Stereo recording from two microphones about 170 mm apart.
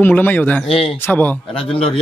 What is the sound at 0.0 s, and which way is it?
Speech, 10° left (ahead or behind).